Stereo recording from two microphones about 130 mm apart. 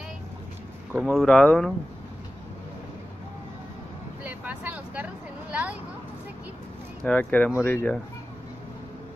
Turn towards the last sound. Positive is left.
turn(degrees=15)  # may be behind; listen again after turning